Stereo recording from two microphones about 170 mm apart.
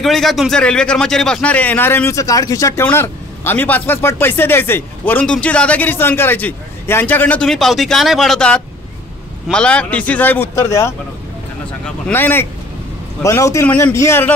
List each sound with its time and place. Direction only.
0.0 s a man's voice: centre (ahead or behind)